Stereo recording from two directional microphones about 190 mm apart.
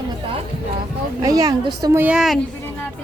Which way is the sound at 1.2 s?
20° right (ahead or behind).